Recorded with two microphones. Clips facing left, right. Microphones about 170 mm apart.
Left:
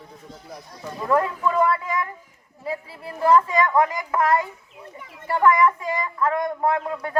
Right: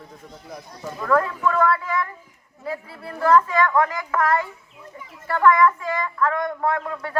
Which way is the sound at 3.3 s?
15° left (ahead or behind).